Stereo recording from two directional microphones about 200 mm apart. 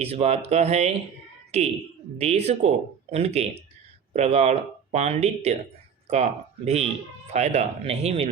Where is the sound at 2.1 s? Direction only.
30° right (ahead or behind).